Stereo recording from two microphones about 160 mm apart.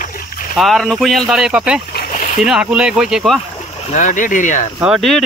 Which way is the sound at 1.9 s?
70° left (ahead or behind).